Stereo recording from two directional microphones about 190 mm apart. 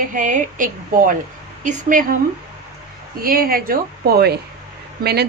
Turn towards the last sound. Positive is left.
turn(degrees=-60)  # may be behind; listen again after turning